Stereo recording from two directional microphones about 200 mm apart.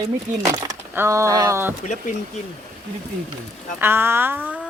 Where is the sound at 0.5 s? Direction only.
15° right (ahead or behind).